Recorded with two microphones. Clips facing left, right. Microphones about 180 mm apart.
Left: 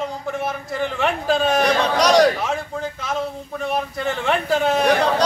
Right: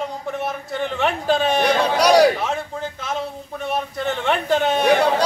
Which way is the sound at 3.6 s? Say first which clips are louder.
Left 1 dB; centre (ahead or behind).